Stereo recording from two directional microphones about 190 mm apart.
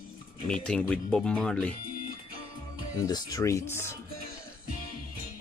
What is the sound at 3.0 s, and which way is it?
Speech, 20° left (ahead or behind).